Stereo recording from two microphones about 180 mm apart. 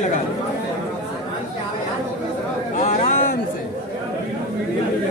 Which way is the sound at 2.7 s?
45° left (ahead or behind).